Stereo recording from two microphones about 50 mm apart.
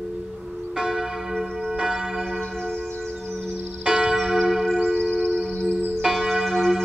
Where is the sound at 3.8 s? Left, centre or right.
Centre.